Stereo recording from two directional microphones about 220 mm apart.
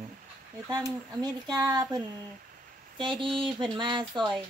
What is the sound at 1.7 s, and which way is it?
A woman's voice, 15° right (ahead or behind).